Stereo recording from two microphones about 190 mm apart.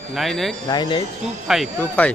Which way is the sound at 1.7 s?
5° left (ahead or behind).